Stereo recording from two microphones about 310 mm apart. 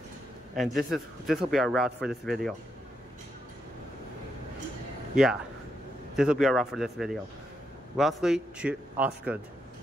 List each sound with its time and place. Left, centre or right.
0.6 s a man's voice: centre
5.1 s a man's voice: centre